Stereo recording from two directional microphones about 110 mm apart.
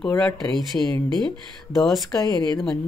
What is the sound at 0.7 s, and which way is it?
Speech, 15° left (ahead or behind).